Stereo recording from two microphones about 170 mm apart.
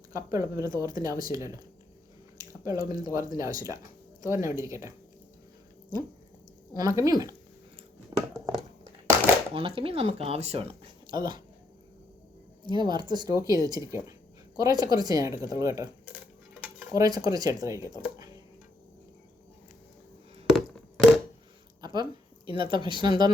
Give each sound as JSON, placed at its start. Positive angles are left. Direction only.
{"t": 0.1, "sound": "speech", "side_deg": -20}
{"t": 2.4, "sound": "drip", "side_deg": -20}
{"t": 3.0, "sound": "speech", "side_deg": -20}
{"t": 6.7, "sound": "speech", "side_deg": -20}
{"t": 8.1, "sound": "scissors", "side_deg": -20}
{"t": 8.5, "sound": "crushing", "side_deg": -20}
{"t": 9.6, "sound": "speech", "side_deg": -35}
{"t": 12.6, "sound": "speech", "side_deg": -25}
{"t": 16.1, "sound": "cutlery", "side_deg": -10}
{"t": 16.9, "sound": "speech", "side_deg": -20}
{"t": 20.5, "sound": "a sound", "side_deg": 0}
{"t": 21.8, "sound": "a sound", "side_deg": -25}
{"t": 22.4, "sound": "speech", "side_deg": -30}